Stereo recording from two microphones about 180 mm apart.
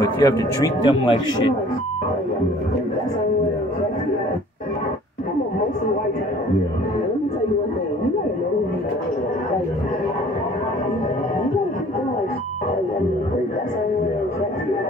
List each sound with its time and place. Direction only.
0.0 s a man's voice: 20° left (ahead or behind)